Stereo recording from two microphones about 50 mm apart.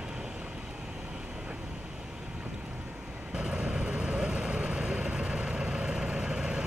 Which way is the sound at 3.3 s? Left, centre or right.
Right.